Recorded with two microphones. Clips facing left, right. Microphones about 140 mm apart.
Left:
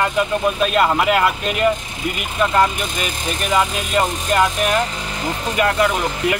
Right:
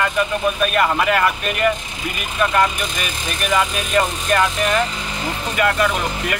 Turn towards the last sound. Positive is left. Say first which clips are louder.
# left 3 dB
turn(degrees=20)  # may be behind; listen again after turning